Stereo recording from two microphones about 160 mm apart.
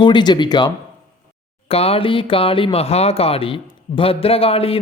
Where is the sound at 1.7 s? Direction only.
40° left (ahead or behind).